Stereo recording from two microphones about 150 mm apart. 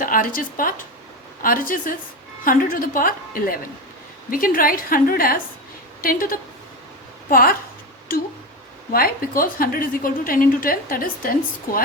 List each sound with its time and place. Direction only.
0.0 s a woman's voice: 70° left (ahead or behind)